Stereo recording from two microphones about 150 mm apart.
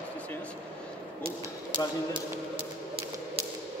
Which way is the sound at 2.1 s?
35° right (ahead or behind).